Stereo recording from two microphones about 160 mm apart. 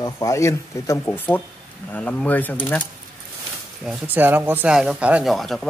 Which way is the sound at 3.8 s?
10° right (ahead or behind).